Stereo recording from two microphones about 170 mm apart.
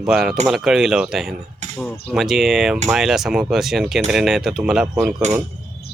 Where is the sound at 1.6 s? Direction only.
40° right (ahead or behind).